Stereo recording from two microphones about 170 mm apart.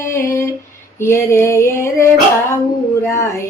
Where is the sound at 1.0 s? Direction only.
15° left (ahead or behind).